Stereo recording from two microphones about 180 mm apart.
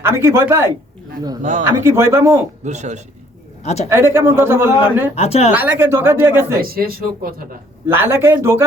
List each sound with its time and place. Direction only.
0.0 s a man's voice: 15° right (ahead or behind)
1.4 s a man's voice: 45° right (ahead or behind)
1.6 s a man's voice: 15° right (ahead or behind)
2.6 s speech: 40° right (ahead or behind)
3.6 s a man's voice: 40° left (ahead or behind)
3.8 s a man's voice: 15° right (ahead or behind)
5.1 s a woman's voice: 35° left (ahead or behind)
5.5 s a man's voice: 10° right (ahead or behind)
6.6 s speech: 55° right (ahead or behind)
7.9 s a man's voice: 10° right (ahead or behind)